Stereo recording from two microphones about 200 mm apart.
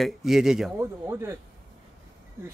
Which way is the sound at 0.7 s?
15° right (ahead or behind).